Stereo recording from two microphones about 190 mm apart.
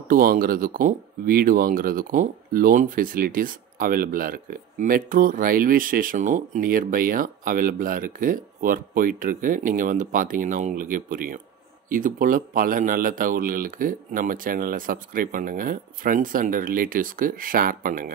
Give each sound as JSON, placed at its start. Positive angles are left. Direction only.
{"t": 0.1, "sound": "speech", "side_deg": -50}